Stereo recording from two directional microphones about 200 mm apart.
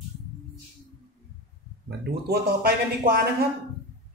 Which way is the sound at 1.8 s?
50° right (ahead or behind).